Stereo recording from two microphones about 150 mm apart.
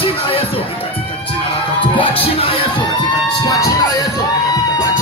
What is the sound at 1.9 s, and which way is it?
Music, 35° left (ahead or behind).